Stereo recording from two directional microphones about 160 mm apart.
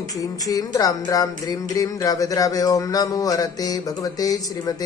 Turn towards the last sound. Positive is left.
turn(degrees=20)  # may be behind; listen again after turning